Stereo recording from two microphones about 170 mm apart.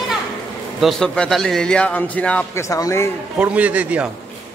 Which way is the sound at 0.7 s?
Centre (ahead or behind).